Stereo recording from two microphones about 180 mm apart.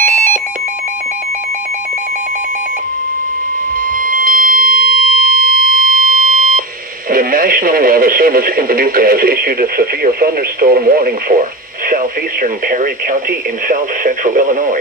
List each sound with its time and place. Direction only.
0.0 s alarm: 45° right (ahead or behind)
4.0 s alarm: 50° right (ahead or behind)
7.1 s speech: 50° right (ahead or behind)